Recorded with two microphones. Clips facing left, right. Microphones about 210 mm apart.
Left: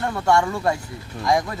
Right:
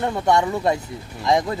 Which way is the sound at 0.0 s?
20° right (ahead or behind).